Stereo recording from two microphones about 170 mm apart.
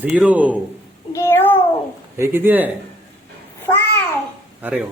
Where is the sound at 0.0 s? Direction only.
10° right (ahead or behind).